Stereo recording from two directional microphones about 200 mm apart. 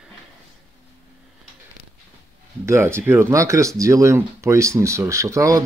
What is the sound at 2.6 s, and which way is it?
Speech, 15° right (ahead or behind).